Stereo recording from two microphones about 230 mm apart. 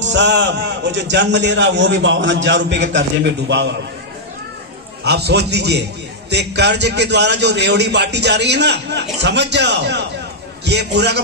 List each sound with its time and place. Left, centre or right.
0.0 s a man's voice: right
5.0 s a man's voice: right